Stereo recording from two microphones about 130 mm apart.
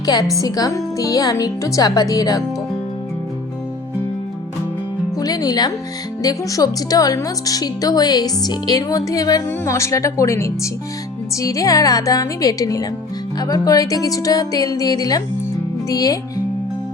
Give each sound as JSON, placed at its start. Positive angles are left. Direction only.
{"t": 0.0, "sound": "a woman's voice", "side_deg": 30}
{"t": 5.1, "sound": "music", "side_deg": 30}
{"t": 6.2, "sound": "a woman's voice", "side_deg": 30}